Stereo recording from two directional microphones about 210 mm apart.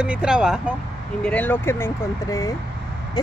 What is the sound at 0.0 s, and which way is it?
Speech, 5° right (ahead or behind).